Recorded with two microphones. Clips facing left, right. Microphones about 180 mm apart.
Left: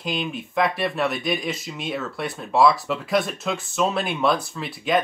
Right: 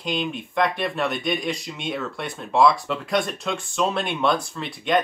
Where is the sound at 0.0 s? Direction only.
Centre (ahead or behind).